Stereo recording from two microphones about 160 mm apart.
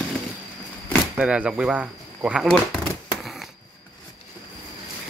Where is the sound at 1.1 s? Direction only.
5° right (ahead or behind).